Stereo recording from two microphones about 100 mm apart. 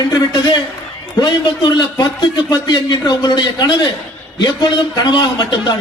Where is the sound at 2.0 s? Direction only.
40° left (ahead or behind).